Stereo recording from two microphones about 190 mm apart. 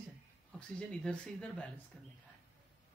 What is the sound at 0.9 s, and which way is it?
Speech, 5° left (ahead or behind).